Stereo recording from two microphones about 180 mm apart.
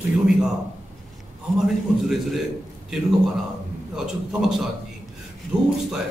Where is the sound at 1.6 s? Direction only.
Centre (ahead or behind).